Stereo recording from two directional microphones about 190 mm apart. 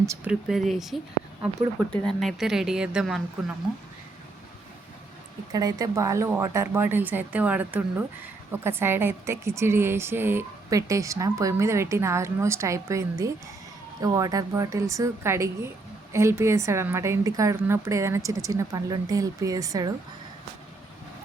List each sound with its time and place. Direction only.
0.3 s speech: centre (ahead or behind)
5.5 s speech: 20° right (ahead or behind)